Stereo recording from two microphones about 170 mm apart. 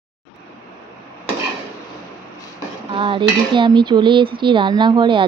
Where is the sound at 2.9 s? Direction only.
30° right (ahead or behind).